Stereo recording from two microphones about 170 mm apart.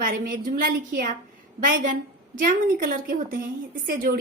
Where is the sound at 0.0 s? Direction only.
55° right (ahead or behind).